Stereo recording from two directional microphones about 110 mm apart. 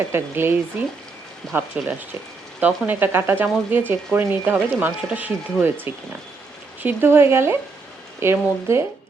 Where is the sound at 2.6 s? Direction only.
15° right (ahead or behind).